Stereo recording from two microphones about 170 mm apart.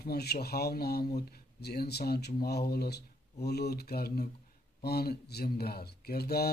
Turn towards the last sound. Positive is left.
turn(degrees=65)  # may be behind; listen again after turning